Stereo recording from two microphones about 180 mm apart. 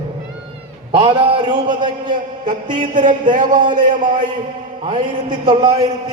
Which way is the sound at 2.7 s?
45° right (ahead or behind).